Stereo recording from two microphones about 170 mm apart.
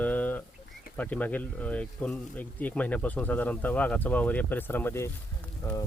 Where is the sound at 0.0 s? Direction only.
10° left (ahead or behind).